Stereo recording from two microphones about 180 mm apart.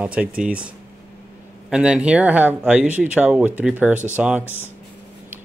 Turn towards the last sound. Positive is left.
turn(degrees=-10)  # may be behind; listen again after turning